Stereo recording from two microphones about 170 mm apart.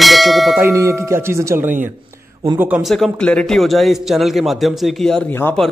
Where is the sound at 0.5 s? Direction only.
15° right (ahead or behind); by 5.6 s 10° left (ahead or behind).